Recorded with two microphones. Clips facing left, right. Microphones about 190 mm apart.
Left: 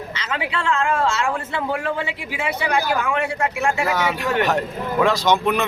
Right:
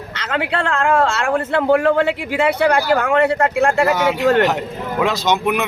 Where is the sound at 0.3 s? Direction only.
55° right (ahead or behind).